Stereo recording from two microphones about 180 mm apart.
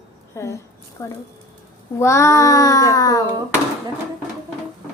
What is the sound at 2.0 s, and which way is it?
Child singing, 15° left (ahead or behind).